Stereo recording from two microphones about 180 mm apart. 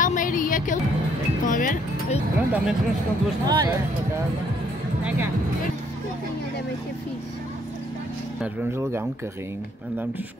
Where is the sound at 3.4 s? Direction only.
20° right (ahead or behind).